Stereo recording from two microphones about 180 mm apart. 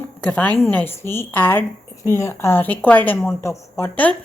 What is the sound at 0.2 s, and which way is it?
A woman's voice, 5° left (ahead or behind).